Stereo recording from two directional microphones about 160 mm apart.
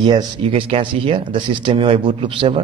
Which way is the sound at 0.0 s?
30° right (ahead or behind).